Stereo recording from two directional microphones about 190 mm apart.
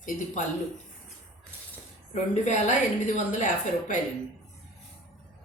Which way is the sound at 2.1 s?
40° left (ahead or behind).